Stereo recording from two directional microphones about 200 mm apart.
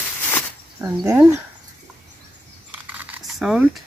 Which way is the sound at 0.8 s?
15° right (ahead or behind).